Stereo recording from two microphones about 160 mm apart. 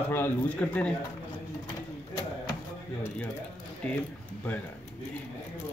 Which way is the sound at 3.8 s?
10° left (ahead or behind).